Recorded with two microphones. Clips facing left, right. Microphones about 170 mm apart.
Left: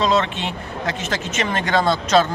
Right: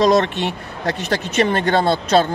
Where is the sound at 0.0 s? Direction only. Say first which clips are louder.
Right 4 dB; 40° right (ahead or behind).